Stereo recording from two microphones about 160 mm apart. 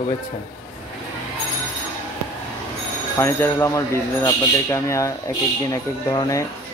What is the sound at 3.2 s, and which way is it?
A man's voice, 15° left (ahead or behind).